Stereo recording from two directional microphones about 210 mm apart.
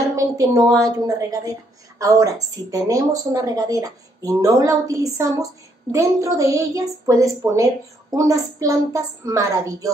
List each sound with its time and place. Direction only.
0.1 s a woman's voice: 15° right (ahead or behind)